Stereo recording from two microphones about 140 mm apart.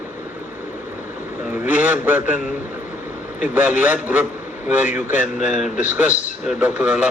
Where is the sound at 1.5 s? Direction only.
10° right (ahead or behind).